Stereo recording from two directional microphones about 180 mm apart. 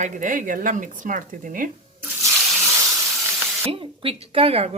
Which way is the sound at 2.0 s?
5° right (ahead or behind).